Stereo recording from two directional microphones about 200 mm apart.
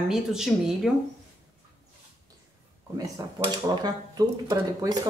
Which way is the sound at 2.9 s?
15° right (ahead or behind).